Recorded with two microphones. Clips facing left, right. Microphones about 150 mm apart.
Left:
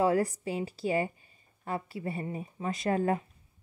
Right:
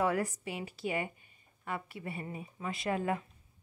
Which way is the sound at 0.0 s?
35° left (ahead or behind).